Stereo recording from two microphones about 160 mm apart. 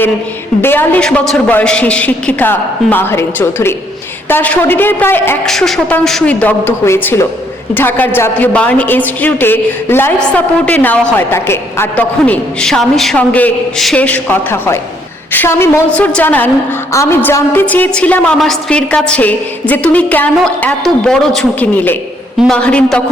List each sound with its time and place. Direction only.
0.6 s a woman's voice: 10° left (ahead or behind)
5.5 s a woman's voice: centre (ahead or behind)